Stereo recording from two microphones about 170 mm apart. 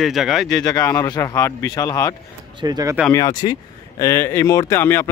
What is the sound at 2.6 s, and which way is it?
Speech, 20° right (ahead or behind).